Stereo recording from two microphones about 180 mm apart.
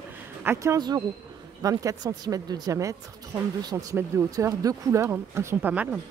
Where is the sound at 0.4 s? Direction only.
15° right (ahead or behind).